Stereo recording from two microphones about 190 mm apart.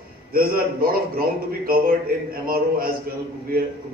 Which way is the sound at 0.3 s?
50° right (ahead or behind).